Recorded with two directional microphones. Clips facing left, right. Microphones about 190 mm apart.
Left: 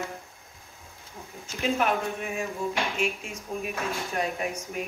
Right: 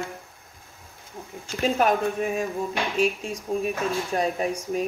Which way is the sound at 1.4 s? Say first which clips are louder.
Right 4 dB; 40° right (ahead or behind).